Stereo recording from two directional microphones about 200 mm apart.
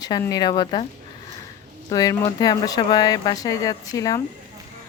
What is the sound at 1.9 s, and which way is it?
Speech, 20° left (ahead or behind).